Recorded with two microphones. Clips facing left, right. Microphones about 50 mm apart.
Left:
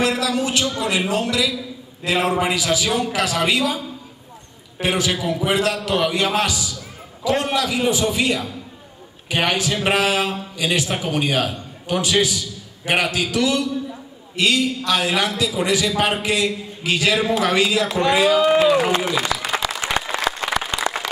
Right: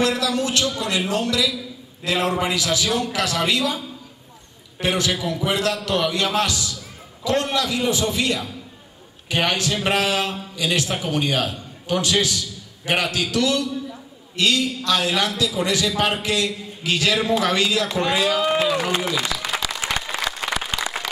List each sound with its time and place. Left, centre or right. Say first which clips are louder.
0.0 s a man's voice: left 1 dB; centre
4.7 s a man's voice: left 1 dB; left
10.2 s a man's voice: left 3 dB; centre
10.6 s a man's voice: left 1 dB; left
14.9 s a man's voice: even; left
17.1 s a man's voice: left 1 dB; centre
17.5 s a man's voice: left 2 dB; centre
18.3 s speech: left 5 dB; centre
19.1 s applause: left 3 dB; centre